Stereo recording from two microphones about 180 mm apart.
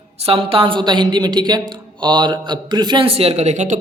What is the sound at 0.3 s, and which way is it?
A woman's voice, 30° right (ahead or behind).